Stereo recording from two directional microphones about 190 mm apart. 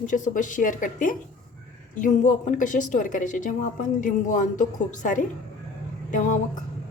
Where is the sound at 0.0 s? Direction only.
40° left (ahead or behind).